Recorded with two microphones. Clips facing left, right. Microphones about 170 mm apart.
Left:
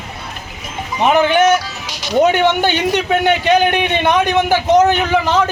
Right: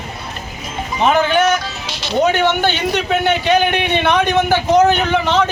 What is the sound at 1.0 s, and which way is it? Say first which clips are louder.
Music: left 2 dB; 15° left (ahead or behind).